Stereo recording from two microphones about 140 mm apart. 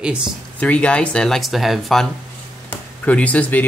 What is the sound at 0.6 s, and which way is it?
Speech, 10° left (ahead or behind).